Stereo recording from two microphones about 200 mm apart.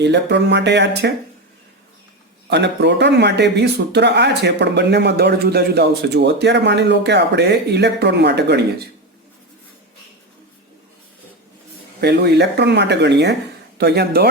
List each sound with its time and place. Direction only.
0.0 s speech: 60° right (ahead or behind)
2.5 s speech: 60° right (ahead or behind)
11.9 s speech: 55° right (ahead or behind)